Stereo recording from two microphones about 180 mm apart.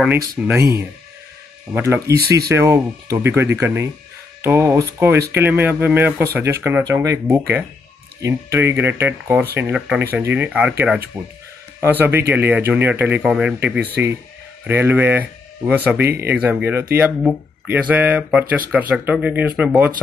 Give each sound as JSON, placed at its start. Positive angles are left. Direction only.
{"t": 0.6, "sound": "speech", "side_deg": -65}
{"t": 1.8, "sound": "speech", "side_deg": -15}